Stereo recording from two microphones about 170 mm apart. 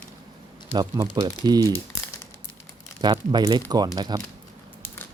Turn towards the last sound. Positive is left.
turn(degrees=-25)  # may be behind; listen again after turning